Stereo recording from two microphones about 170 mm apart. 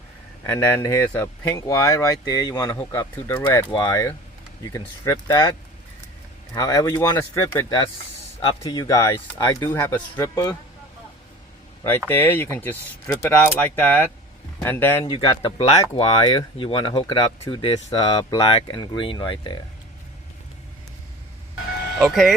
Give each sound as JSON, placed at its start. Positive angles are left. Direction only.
{"t": 0.4, "sound": "speech", "side_deg": 15}
{"t": 11.8, "sound": "speech", "side_deg": 10}
{"t": 15.0, "sound": "speech", "side_deg": 25}
{"t": 17.9, "sound": "speech", "side_deg": 25}
{"t": 21.9, "sound": "speech", "side_deg": 0}